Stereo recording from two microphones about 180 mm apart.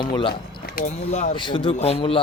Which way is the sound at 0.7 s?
50° left (ahead or behind).